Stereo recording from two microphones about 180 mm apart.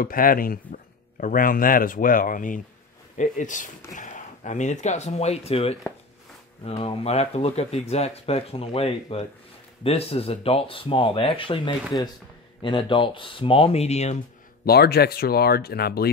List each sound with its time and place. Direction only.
0.0 s speech: 55° left (ahead or behind); by 14.1 s 35° left (ahead or behind)
14.6 s speech: 60° left (ahead or behind)